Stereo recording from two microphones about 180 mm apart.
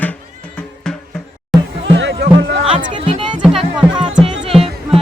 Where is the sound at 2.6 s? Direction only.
30° right (ahead or behind).